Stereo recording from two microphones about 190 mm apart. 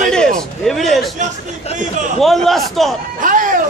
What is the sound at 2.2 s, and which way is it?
Speech, centre (ahead or behind).